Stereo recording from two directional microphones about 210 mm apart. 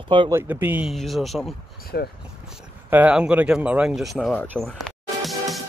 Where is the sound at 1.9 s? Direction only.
50° left (ahead or behind).